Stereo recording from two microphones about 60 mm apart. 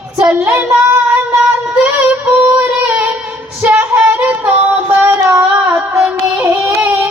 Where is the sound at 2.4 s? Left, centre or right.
Right.